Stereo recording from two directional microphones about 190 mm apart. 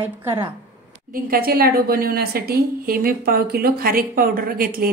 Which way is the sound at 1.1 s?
50° right (ahead or behind).